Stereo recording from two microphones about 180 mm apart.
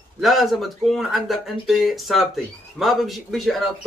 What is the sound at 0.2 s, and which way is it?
Speech, centre (ahead or behind).